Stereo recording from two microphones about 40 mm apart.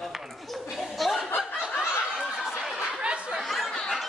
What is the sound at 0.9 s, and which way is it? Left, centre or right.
Chuckle, centre.